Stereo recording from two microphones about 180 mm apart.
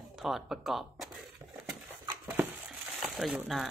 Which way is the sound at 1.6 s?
15° right (ahead or behind).